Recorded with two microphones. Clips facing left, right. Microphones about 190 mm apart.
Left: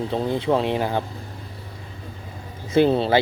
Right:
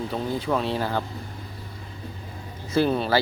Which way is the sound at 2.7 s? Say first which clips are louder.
Left 4 dB; 25° left (ahead or behind).